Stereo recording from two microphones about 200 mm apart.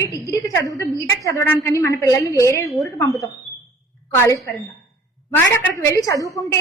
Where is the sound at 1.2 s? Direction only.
10° left (ahead or behind).